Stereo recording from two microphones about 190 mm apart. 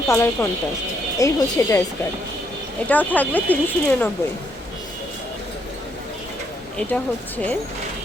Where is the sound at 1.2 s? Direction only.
15° left (ahead or behind).